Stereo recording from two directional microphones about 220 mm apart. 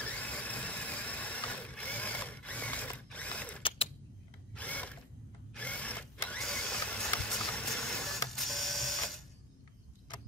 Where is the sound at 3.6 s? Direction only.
25° left (ahead or behind).